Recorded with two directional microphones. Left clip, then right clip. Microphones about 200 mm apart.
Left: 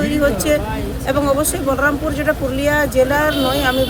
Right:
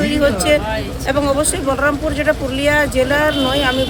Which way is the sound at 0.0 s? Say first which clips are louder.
Right 2 dB; 5° right (ahead or behind).